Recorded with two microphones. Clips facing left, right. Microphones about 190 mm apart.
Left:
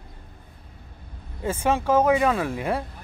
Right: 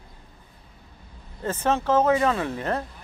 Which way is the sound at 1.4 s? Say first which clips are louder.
Left 1 dB; 10° left (ahead or behind).